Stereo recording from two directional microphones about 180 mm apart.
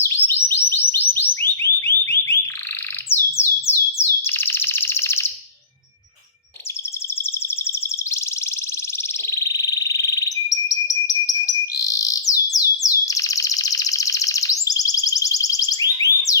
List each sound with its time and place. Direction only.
0.0 s chirp tone: 15° left (ahead or behind)
3.1 s bird: 15° left (ahead or behind)
9.3 s frog: 20° left (ahead or behind)